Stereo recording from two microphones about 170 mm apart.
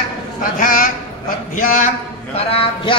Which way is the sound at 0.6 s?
55° left (ahead or behind).